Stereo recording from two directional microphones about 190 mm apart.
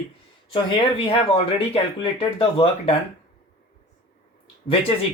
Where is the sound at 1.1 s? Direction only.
30° left (ahead or behind).